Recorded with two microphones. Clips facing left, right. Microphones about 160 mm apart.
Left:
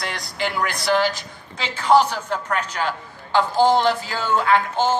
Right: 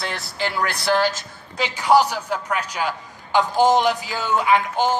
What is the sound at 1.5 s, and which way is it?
A man's voice, 10° right (ahead or behind).